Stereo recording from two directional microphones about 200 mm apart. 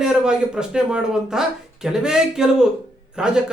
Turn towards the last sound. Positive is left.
turn(degrees=-5)  # may be behind; listen again after turning